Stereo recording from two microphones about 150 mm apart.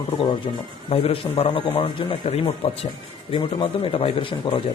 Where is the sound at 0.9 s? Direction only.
40° left (ahead or behind).